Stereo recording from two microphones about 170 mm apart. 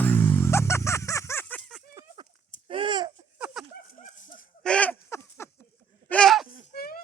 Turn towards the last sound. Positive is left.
turn(degrees=60)  # may be behind; listen again after turning